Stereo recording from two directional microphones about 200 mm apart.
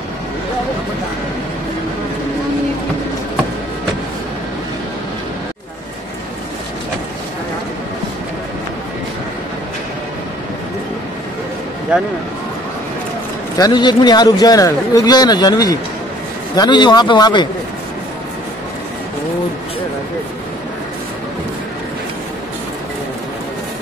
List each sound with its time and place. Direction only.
11.9 s a man's voice: 5° right (ahead or behind)
13.6 s speech: 20° left (ahead or behind)